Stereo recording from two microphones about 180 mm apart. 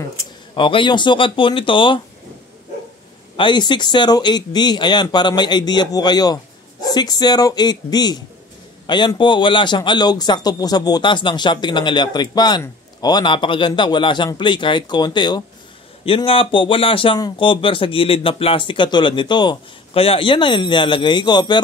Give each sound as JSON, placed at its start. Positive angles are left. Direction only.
{"t": 0.6, "sound": "a man's voice", "side_deg": 30}
{"t": 3.3, "sound": "a man's voice", "side_deg": 25}